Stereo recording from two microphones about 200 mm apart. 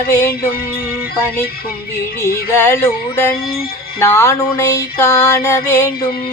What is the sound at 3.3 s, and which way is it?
Music, 50° left (ahead or behind).